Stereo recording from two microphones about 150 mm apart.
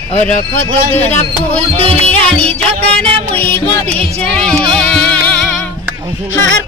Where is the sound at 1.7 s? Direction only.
40° right (ahead or behind).